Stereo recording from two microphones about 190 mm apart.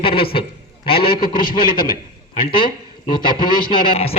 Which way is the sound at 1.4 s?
50° left (ahead or behind).